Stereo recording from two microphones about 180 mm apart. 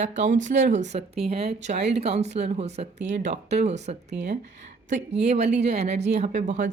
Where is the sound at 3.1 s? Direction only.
80° right.